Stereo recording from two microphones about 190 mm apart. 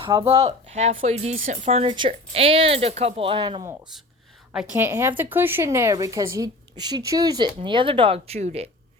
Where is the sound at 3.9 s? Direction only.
Centre (ahead or behind); by 8.7 s 35° right (ahead or behind).